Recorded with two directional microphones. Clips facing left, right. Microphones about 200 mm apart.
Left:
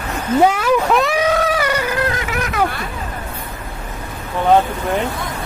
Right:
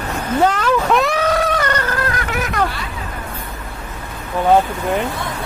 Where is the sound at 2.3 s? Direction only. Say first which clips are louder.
Right 1 dB; centre (ahead or behind).